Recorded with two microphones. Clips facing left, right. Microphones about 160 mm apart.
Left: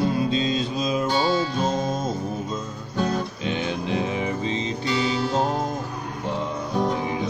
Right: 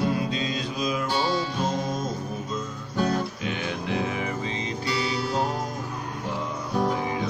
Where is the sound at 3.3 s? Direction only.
25° left (ahead or behind).